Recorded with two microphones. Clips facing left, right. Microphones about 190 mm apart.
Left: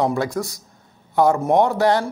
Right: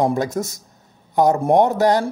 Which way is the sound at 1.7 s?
40° right (ahead or behind).